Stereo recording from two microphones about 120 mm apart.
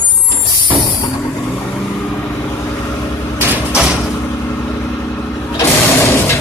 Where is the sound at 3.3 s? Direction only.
15° right (ahead or behind).